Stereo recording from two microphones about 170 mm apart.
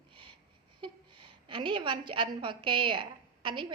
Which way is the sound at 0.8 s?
30° right (ahead or behind).